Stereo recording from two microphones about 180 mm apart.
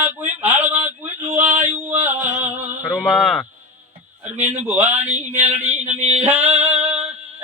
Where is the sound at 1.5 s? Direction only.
40° right (ahead or behind).